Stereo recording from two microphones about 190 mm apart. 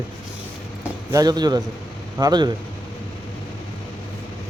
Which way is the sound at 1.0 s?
20° right (ahead or behind).